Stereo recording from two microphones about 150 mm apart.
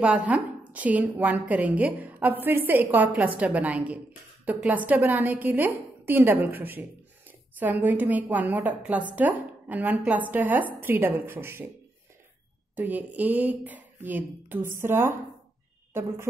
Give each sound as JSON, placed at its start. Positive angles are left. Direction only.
{"t": 0.0, "sound": "a woman's voice", "side_deg": -10}
{"t": 12.7, "sound": "a woman's voice", "side_deg": -10}